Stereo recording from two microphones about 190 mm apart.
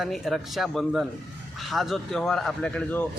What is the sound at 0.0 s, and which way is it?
A man's voice, centre (ahead or behind).